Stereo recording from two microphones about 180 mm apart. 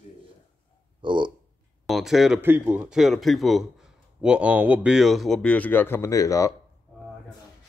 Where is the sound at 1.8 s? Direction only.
Centre (ahead or behind); by 6.5 s 15° left (ahead or behind).